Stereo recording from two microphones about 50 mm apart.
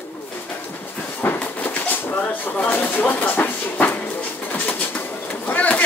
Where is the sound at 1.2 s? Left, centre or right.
Left.